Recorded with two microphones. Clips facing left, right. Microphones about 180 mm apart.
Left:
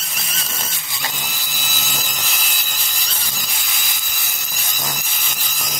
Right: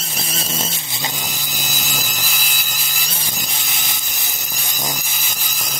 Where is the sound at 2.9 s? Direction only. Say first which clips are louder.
Right 2 dB; 20° right (ahead or behind).